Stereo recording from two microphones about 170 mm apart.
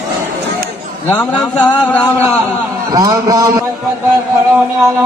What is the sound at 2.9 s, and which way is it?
Speech, 20° right (ahead or behind).